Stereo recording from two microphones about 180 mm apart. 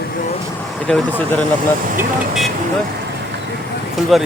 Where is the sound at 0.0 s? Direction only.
50° left (ahead or behind).